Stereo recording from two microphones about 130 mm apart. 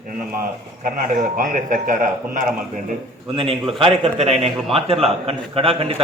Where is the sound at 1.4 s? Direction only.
90° right.